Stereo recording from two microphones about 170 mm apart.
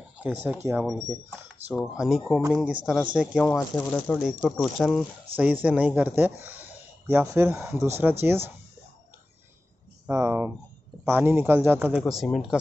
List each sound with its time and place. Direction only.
0.2 s speech: 10° right (ahead or behind)
1.7 s speech: 5° right (ahead or behind)
3.4 s speech: 5° left (ahead or behind); by 8.5 s 15° right (ahead or behind)
10.0 s speech: 15° right (ahead or behind)
12.0 s speech: centre (ahead or behind)